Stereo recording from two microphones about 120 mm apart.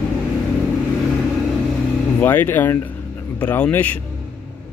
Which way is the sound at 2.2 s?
15° left (ahead or behind).